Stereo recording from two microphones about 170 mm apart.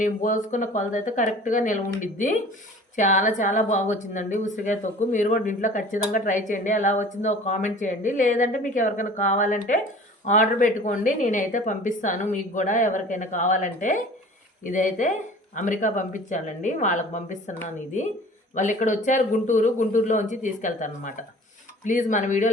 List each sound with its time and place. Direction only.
0.0 s a woman's voice: 50° left (ahead or behind)
18.5 s a woman's voice: 50° left (ahead or behind)